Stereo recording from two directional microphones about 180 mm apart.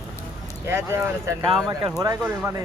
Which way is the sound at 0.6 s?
15° right (ahead or behind).